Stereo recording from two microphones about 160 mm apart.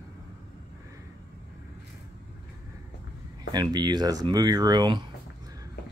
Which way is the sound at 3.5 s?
25° right (ahead or behind).